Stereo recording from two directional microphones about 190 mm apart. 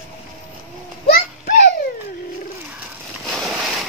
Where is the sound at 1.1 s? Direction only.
55° left (ahead or behind).